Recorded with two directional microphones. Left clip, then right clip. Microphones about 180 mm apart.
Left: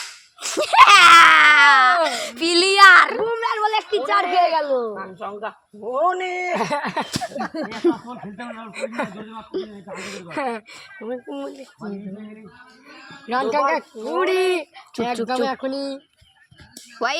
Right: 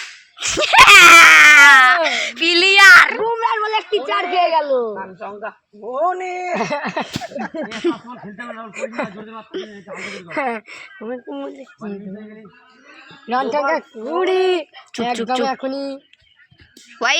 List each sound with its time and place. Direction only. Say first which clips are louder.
0.3 s baby cry: right 3 dB; 5° left (ahead or behind)
2.0 s a sound: right 5 dB; 15° left (ahead or behind)
3.4 s a sound: right 2 dB; 50° right (ahead or behind)
4.9 s speech: right 1 dB; 30° right (ahead or behind)
7.7 s speech: left 2 dB; 10° left (ahead or behind)
8.9 s speech: right 1 dB; 40° right (ahead or behind)
9.1 s speech: even; 10° left (ahead or behind)
9.9 s speech: right 5 dB; 25° right (ahead or behind)
13.2 s speech: right 1 dB; 35° right (ahead or behind)
17.0 s speech: right 5 dB; 5° left (ahead or behind)